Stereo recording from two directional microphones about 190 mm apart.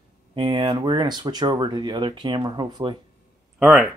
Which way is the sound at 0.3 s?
25° right (ahead or behind).